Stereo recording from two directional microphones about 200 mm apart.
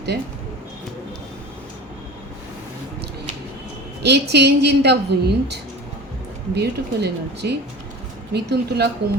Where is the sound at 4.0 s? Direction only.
55° right (ahead or behind).